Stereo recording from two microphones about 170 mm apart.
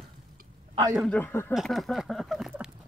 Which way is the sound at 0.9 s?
5° left (ahead or behind).